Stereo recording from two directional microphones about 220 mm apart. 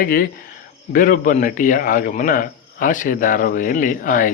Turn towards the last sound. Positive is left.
turn(degrees=35)  # may be behind; listen again after turning